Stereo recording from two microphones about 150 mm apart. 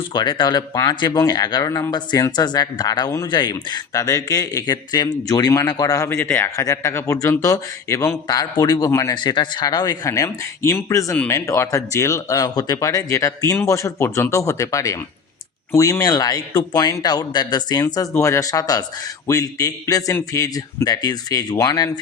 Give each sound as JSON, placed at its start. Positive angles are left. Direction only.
{"t": 0.1, "sound": "speech", "side_deg": 30}